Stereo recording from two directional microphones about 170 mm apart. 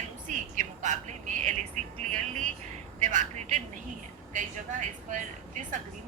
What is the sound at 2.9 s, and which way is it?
Speech, 45° right (ahead or behind).